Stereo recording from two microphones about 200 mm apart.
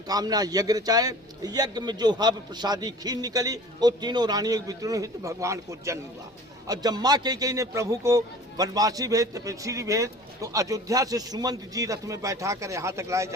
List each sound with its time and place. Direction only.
0.1 s a man's voice: 20° right (ahead or behind)